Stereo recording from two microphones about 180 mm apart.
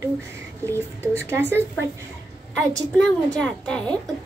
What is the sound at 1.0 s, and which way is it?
Speech, 15° right (ahead or behind).